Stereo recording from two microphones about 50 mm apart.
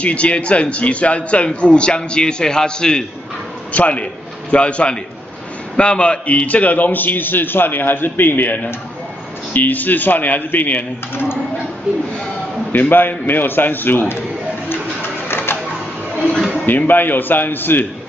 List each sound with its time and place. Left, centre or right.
0.0 s a man's voice: left
3.7 s a man's voice: left
12.7 s a man's voice: left
14.7 s pigeon: left
16.6 s a man's voice: left